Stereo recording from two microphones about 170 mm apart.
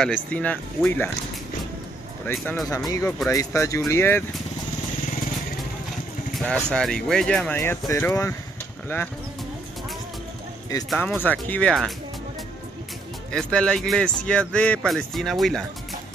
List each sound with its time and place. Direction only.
0.0 s speech: 10° left (ahead or behind)
2.2 s speech: 10° left (ahead or behind)
6.3 s speech: 5° left (ahead or behind)
10.9 s speech: centre (ahead or behind)
13.3 s speech: 5° left (ahead or behind)